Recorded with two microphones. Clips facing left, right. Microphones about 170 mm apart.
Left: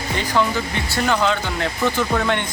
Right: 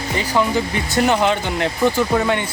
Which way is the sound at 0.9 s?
20° right (ahead or behind).